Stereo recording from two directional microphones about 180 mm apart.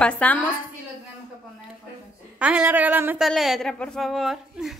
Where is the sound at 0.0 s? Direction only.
5° left (ahead or behind).